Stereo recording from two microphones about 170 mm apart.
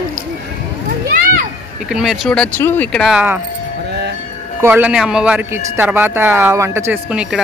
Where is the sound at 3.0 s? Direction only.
10° right (ahead or behind).